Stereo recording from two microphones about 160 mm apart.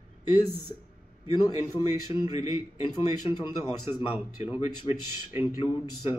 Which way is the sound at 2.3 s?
25° right (ahead or behind).